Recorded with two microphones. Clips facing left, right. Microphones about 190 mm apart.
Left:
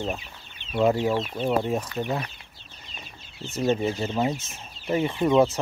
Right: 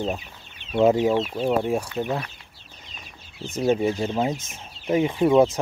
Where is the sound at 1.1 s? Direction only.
5° right (ahead or behind).